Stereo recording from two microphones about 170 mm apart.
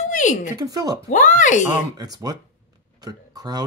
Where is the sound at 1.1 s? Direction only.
50° left (ahead or behind).